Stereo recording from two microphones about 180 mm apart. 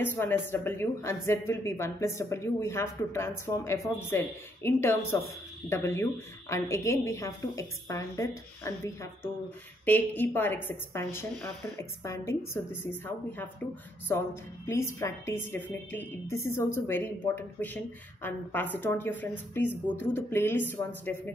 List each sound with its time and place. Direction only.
0.0 s a woman's voice: 10° left (ahead or behind)
14.7 s a woman's voice: 15° left (ahead or behind)